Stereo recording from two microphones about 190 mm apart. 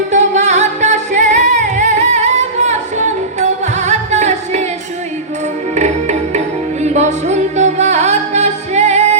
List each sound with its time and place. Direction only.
0.1 s music: 40° right (ahead or behind)
5.7 s music: 35° right (ahead or behind)